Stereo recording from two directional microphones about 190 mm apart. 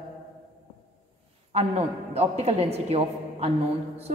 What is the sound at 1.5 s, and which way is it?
A man's voice, 30° right (ahead or behind).